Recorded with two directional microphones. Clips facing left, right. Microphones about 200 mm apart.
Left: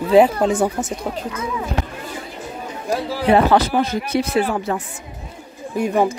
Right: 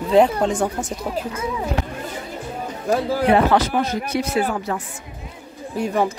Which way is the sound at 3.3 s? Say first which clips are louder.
Left 3 dB; 35° left (ahead or behind).